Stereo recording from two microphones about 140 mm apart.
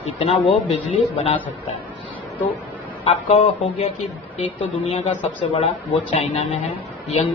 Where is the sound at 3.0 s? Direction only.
40° left (ahead or behind).